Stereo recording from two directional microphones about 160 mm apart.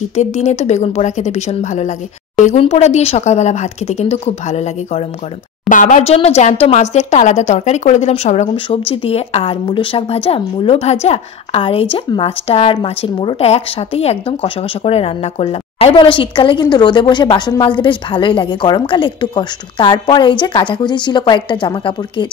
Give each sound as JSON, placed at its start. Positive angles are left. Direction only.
{"t": 0.1, "sound": "speech", "side_deg": 45}
{"t": 5.7, "sound": "speech", "side_deg": 55}